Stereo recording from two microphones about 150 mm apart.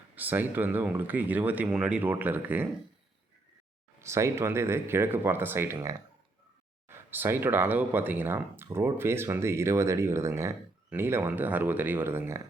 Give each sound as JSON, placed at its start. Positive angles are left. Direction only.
{"t": 0.2, "sound": "speech", "side_deg": -10}
{"t": 4.0, "sound": "speech", "side_deg": -20}